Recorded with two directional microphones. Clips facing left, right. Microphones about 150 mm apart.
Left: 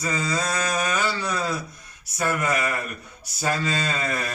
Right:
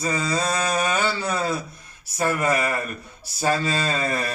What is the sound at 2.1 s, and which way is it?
Speech, 30° right (ahead or behind).